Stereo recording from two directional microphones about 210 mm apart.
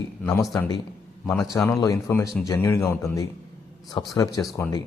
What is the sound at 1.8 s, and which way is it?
A man's voice, 15° left (ahead or behind).